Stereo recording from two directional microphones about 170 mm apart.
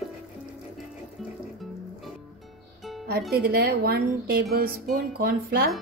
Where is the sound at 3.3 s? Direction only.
65° right (ahead or behind).